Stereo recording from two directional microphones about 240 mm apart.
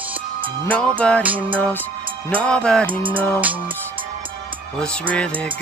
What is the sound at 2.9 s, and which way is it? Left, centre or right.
Music, right.